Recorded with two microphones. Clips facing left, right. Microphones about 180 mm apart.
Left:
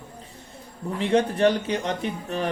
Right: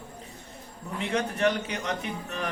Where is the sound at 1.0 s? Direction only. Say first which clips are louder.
Left 7 dB; 30° left (ahead or behind).